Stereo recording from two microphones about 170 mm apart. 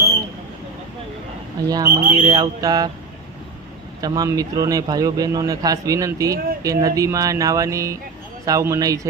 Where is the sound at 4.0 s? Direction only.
20° right (ahead or behind).